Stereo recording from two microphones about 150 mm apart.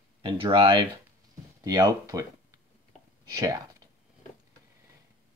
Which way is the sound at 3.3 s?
25° right (ahead or behind).